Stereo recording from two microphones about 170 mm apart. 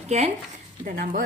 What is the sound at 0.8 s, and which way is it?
Speech, 55° right (ahead or behind).